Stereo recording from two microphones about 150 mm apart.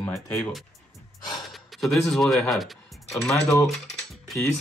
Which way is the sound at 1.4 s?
Centre (ahead or behind).